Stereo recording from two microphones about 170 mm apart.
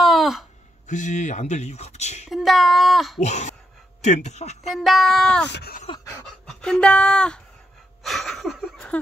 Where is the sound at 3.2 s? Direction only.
40° left (ahead or behind).